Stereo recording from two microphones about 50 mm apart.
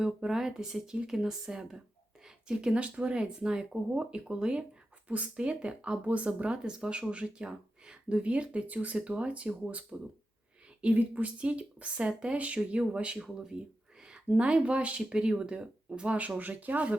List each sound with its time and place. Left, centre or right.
0.0 s speech: centre
13.2 s speech: centre
14.1 s speech: right